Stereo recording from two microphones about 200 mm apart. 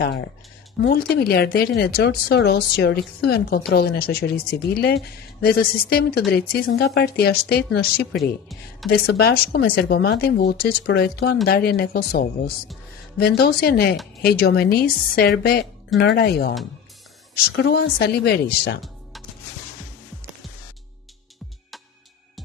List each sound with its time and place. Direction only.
0.8 s a woman's voice: 50° left (ahead or behind)